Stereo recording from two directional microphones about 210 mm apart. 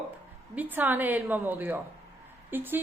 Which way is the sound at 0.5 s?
10° right (ahead or behind).